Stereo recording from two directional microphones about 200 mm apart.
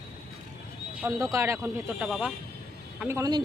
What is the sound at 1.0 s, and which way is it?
Speech, 15° right (ahead or behind).